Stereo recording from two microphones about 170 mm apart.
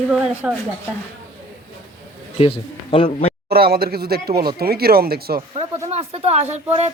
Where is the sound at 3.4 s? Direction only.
65° right (ahead or behind).